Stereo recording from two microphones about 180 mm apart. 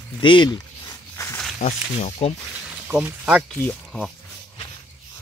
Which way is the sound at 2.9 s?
5° right (ahead or behind).